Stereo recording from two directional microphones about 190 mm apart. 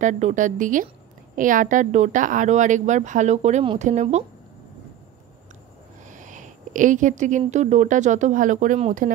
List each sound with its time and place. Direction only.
0.0 s speech: 40° right (ahead or behind)
6.0 s speech: 40° right (ahead or behind)